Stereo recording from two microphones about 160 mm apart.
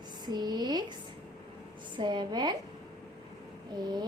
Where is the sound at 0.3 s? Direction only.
25° right (ahead or behind).